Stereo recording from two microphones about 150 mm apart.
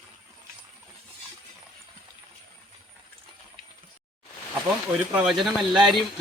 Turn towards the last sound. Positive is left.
turn(degrees=0)  # may be behind; listen again after turning